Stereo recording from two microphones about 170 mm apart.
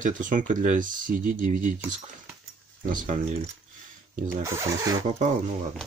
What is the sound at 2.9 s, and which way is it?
Speech, 50° right (ahead or behind).